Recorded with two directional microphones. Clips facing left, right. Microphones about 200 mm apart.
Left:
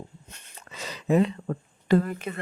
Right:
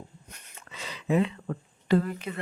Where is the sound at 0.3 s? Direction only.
25° left (ahead or behind).